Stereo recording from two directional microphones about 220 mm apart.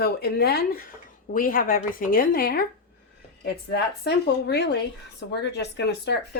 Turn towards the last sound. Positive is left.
turn(degrees=50)  # may be behind; listen again after turning